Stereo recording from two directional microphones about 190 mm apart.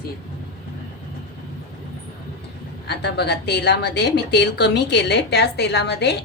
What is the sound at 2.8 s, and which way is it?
A woman's voice, 60° left (ahead or behind).